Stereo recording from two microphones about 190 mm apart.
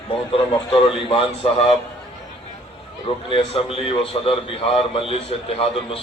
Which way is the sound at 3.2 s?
30° left (ahead or behind).